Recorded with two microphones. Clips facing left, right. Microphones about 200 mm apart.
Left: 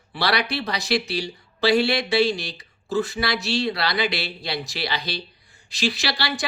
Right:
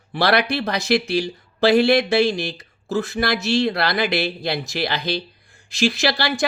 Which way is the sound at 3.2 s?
50° right (ahead or behind).